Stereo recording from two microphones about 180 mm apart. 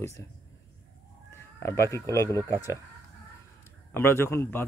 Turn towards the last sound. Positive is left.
turn(degrees=15)  # may be behind; listen again after turning